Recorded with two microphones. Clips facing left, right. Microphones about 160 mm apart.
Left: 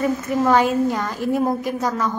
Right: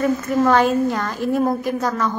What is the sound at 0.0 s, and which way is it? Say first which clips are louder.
A woman's voice: right 2 dB; 10° left (ahead or behind).